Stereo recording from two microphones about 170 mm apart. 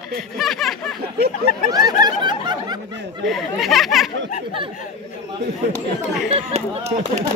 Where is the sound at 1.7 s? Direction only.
25° right (ahead or behind).